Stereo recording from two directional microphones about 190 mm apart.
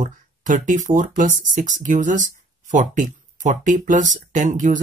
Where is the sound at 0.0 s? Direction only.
40° right (ahead or behind).